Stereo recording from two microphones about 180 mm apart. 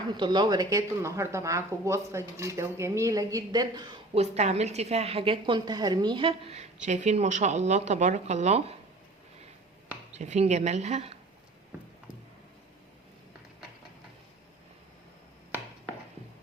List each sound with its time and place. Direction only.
0.1 s speech: 25° right (ahead or behind)
4.1 s a woman's voice: 35° right (ahead or behind)
10.1 s a woman's voice: 40° right (ahead or behind)